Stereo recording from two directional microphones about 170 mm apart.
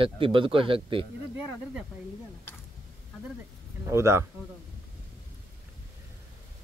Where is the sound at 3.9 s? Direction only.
15° right (ahead or behind).